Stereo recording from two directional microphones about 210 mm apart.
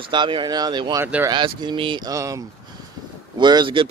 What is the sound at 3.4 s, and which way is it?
Speech, 20° right (ahead or behind).